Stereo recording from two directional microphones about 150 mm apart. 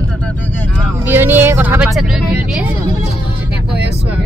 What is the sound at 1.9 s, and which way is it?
Speech, 5° right (ahead or behind).